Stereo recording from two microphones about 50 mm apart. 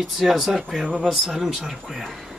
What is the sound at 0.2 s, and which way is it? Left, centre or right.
Speech, centre.